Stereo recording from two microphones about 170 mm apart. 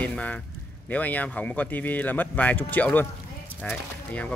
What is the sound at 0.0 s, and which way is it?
Speech, 10° left (ahead or behind).